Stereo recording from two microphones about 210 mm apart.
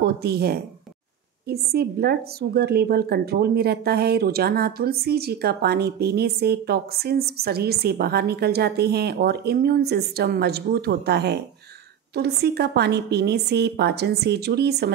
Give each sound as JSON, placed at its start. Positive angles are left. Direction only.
{"t": 0.0, "sound": "a woman's voice", "side_deg": -50}